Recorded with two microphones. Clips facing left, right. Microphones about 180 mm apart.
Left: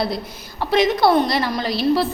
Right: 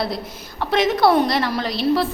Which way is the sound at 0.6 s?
Centre (ahead or behind).